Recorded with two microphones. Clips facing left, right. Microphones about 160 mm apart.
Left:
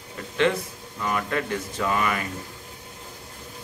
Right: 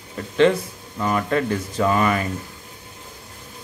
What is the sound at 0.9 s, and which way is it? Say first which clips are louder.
Speech: right 5 dB; 40° right (ahead or behind).